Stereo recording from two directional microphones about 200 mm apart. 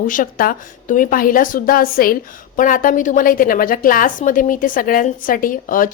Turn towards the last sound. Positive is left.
turn(degrees=45)  # may be behind; listen again after turning